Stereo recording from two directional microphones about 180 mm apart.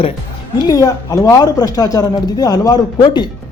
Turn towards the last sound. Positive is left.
turn(degrees=25)  # may be behind; listen again after turning